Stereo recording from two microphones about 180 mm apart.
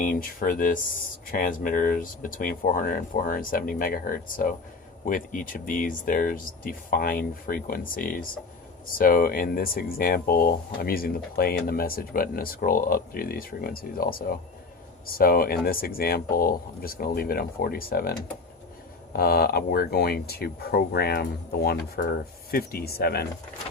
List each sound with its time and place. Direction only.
0.0 s speech: 50° left (ahead or behind)
19.1 s speech: 55° left (ahead or behind)